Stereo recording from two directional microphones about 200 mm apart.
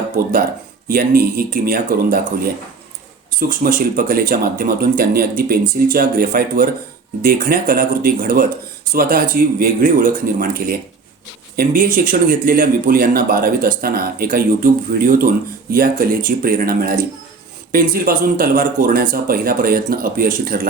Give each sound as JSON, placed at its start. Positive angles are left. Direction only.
{"t": 0.9, "sound": "speech", "side_deg": -45}
{"t": 3.5, "sound": "speech", "side_deg": -45}